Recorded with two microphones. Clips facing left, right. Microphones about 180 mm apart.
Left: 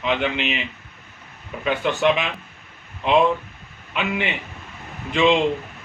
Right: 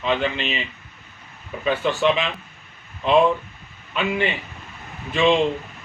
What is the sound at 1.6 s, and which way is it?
Speech, 15° left (ahead or behind).